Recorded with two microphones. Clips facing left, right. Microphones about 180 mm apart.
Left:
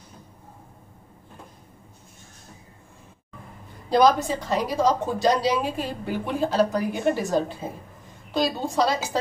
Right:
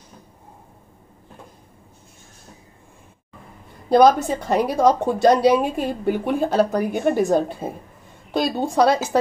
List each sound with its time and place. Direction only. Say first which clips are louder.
3.9 s a woman's voice: right 4 dB; 50° right (ahead or behind)